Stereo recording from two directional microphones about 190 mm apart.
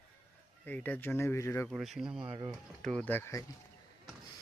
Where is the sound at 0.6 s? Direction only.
10° left (ahead or behind).